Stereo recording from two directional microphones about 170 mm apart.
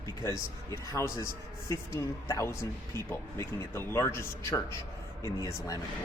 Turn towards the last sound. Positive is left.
turn(degrees=20)  # may be behind; listen again after turning